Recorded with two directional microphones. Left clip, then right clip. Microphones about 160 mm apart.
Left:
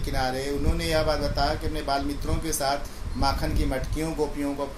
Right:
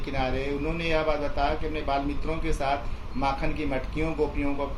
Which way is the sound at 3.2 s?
20° left (ahead or behind).